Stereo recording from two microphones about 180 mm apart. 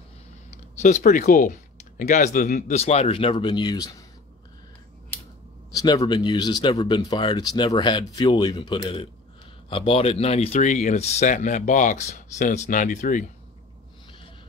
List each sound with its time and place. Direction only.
0.5 s speech: 40° left (ahead or behind); by 3.9 s 20° left (ahead or behind)
5.7 s speech: 20° left (ahead or behind); by 13.3 s 45° left (ahead or behind)